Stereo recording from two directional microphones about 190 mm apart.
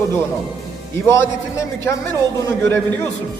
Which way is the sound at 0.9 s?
15° left (ahead or behind).